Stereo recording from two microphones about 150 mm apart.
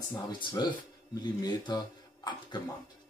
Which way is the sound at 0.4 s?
30° left (ahead or behind).